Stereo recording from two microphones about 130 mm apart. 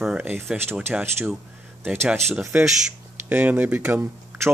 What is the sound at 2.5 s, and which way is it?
Speech, 10° right (ahead or behind).